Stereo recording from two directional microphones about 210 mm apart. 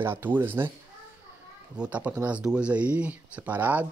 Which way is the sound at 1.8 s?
5° right (ahead or behind).